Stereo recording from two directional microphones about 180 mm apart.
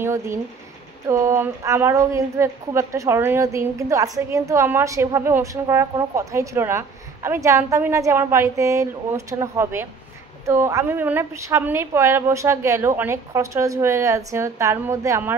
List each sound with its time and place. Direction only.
0.0 s a woman's voice: 15° right (ahead or behind)